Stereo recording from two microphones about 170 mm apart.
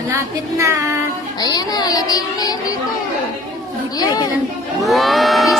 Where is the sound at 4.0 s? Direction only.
25° left (ahead or behind).